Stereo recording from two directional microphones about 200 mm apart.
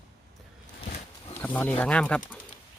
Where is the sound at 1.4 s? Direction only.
10° left (ahead or behind).